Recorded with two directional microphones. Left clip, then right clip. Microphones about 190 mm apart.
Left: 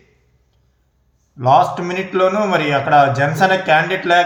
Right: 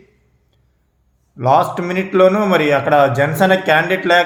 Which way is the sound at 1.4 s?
40° right (ahead or behind).